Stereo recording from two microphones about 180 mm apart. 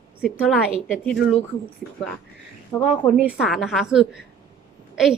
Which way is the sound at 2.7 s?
15° left (ahead or behind).